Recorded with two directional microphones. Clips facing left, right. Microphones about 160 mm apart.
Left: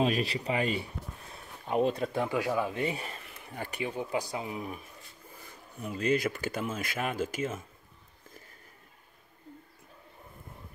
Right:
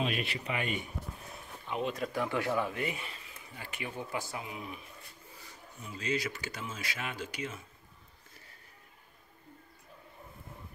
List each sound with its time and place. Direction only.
0.0 s speech: 35° left (ahead or behind)
2.2 s speech: 15° left (ahead or behind)
2.7 s speech: 30° left (ahead or behind)
3.3 s a sound: 55° left (ahead or behind)
3.8 s speech: 20° left (ahead or behind)
4.5 s speech: 45° left (ahead or behind)